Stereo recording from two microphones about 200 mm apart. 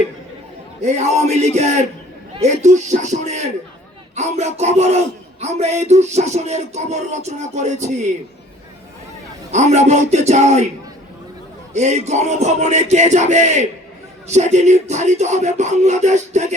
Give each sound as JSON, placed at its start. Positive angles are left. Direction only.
{"t": 0.8, "sound": "speech", "side_deg": -35}
{"t": 9.5, "sound": "speech", "side_deg": -35}
{"t": 11.7, "sound": "speech", "side_deg": -35}